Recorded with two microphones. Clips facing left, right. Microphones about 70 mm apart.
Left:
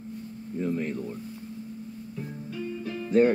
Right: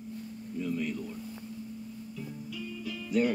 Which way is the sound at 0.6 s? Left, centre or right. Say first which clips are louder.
Left 4 dB; left.